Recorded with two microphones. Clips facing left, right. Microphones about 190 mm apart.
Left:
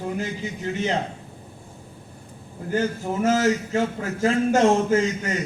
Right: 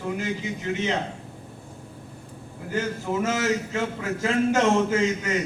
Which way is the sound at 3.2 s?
35° left (ahead or behind).